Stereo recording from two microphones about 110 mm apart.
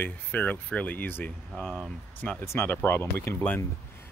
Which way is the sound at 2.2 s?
15° left (ahead or behind).